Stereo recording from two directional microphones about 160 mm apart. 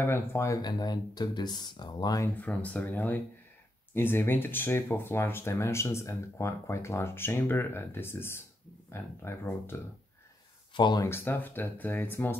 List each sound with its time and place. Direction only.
0.0 s speech: 15° left (ahead or behind)
2.3 s speech: 10° left (ahead or behind)
10.7 s speech: 30° left (ahead or behind)
11.1 s speech: 15° left (ahead or behind)